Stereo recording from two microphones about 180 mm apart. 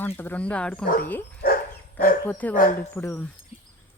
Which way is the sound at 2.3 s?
10° left (ahead or behind).